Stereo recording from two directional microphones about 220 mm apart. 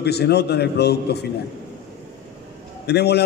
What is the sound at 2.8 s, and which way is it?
Speech, 50° left (ahead or behind).